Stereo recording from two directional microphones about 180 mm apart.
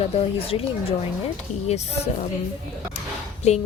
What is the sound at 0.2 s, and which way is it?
A woman's voice, 30° left (ahead or behind).